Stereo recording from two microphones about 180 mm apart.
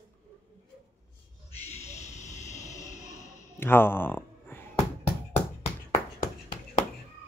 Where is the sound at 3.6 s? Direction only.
10° left (ahead or behind).